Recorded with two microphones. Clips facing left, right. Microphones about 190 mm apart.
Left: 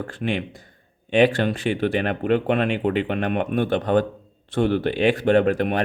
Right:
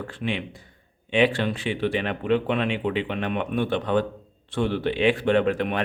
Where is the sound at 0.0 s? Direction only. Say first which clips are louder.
Left 3 dB; 45° left (ahead or behind).